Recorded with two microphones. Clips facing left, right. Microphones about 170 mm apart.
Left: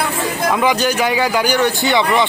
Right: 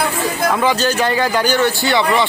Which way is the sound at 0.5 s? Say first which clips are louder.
Left 2 dB; 15° left (ahead or behind).